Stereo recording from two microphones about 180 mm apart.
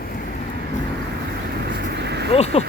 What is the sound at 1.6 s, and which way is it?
Vehicle, 65° right (ahead or behind).